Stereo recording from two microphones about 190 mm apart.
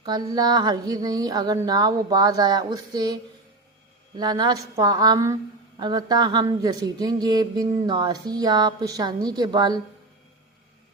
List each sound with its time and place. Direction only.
0.0 s speech: 20° right (ahead or behind)
4.2 s speech: 20° right (ahead or behind)